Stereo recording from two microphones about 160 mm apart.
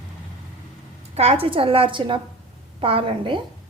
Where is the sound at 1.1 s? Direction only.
40° right (ahead or behind).